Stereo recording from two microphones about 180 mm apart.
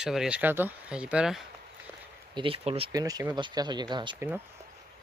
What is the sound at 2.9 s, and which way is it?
Speech, 20° right (ahead or behind).